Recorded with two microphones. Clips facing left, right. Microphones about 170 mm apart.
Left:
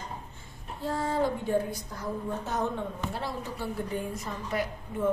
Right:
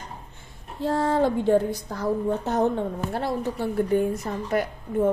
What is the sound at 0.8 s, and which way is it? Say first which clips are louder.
A woman's voice: right 6 dB; 70° right (ahead or behind).